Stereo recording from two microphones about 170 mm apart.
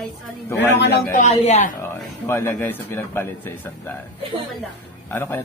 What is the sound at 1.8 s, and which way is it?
A man's voice, 15° left (ahead or behind).